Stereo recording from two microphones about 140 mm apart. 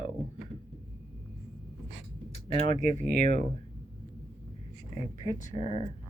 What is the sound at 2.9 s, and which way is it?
Speech, 65° right (ahead or behind).